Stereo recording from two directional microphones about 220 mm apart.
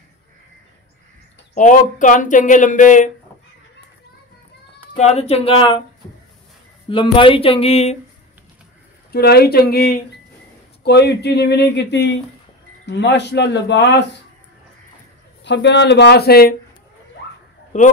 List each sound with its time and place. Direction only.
1.5 s speech: 35° left (ahead or behind)
4.9 s speech: 30° left (ahead or behind)
6.9 s speech: 25° left (ahead or behind)
9.1 s speech: 45° left (ahead or behind)
15.4 s speech: 55° left (ahead or behind)
17.7 s speech: 35° left (ahead or behind)